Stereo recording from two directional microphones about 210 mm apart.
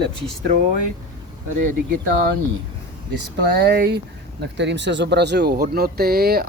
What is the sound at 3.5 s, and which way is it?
Speech, 50° right (ahead or behind).